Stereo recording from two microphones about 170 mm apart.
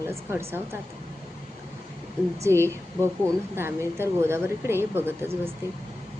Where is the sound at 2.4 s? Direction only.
15° right (ahead or behind).